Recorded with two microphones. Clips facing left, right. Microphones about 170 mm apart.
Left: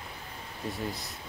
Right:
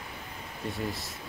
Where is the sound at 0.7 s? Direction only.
Centre (ahead or behind).